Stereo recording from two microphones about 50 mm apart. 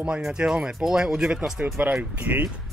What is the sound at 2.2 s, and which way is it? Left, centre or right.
Speech, right.